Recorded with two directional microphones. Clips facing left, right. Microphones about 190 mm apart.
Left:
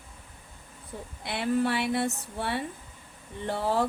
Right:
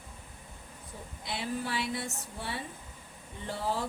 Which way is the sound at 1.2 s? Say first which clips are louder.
Left 9 dB; 65° left (ahead or behind).